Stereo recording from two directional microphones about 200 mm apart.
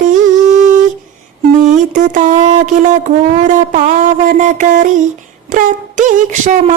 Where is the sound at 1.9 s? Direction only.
40° right (ahead or behind).